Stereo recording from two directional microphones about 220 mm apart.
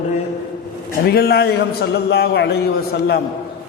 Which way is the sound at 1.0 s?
45° left (ahead or behind).